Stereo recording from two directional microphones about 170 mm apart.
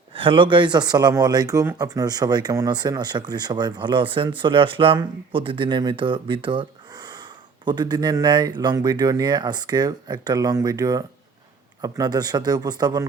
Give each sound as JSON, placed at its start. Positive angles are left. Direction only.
{"t": 0.1, "sound": "speech", "side_deg": -30}